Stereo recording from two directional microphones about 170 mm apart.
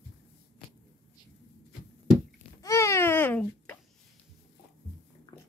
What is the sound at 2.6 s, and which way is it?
Babbling, 15° left (ahead or behind).